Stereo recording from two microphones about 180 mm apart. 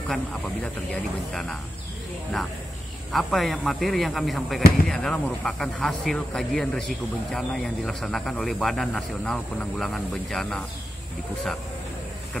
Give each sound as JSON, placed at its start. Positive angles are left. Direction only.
{"t": 0.1, "sound": "speech", "side_deg": 0}
{"t": 3.1, "sound": "speech", "side_deg": 0}